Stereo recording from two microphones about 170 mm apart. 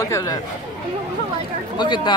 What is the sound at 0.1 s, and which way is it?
Speech, 20° left (ahead or behind).